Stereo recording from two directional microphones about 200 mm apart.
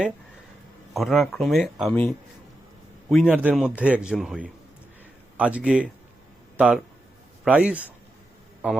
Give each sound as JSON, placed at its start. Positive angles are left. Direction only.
{"t": 0.9, "sound": "speech", "side_deg": 0}